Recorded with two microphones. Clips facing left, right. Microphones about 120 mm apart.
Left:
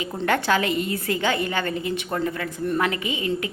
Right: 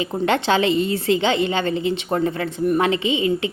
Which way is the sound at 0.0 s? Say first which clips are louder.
Right 3 dB; 20° right (ahead or behind).